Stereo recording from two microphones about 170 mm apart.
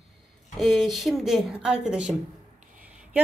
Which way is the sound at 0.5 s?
Centre (ahead or behind).